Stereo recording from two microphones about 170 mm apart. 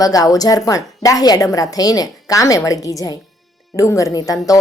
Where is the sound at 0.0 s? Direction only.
20° left (ahead or behind).